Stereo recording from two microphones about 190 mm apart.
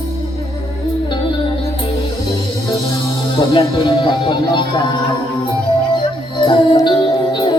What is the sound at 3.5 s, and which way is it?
Speech, 25° left (ahead or behind).